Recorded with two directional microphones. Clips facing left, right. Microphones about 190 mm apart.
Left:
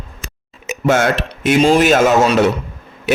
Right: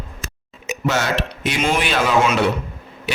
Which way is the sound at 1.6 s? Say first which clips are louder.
Left 9 dB; 35° left (ahead or behind).